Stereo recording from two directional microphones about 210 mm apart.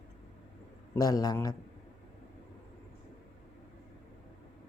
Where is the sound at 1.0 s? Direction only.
15° left (ahead or behind).